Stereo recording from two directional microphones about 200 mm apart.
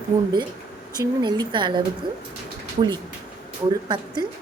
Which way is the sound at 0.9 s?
20° right (ahead or behind).